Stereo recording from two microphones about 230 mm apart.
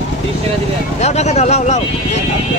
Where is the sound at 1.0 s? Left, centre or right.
Left.